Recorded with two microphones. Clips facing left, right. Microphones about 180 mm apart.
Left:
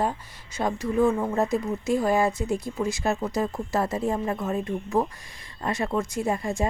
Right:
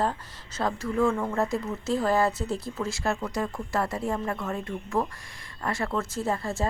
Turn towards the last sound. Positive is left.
turn(degrees=15)  # may be behind; listen again after turning